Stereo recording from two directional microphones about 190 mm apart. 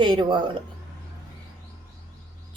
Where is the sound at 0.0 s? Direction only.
25° right (ahead or behind).